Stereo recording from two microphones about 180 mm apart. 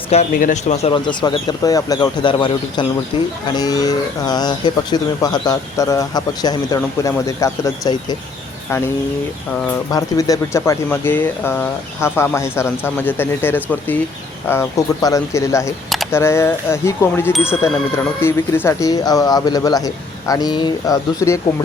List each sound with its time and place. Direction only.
0.1 s speech: 40° left (ahead or behind); by 7.9 s 20° left (ahead or behind)
9.9 s speech: 20° left (ahead or behind)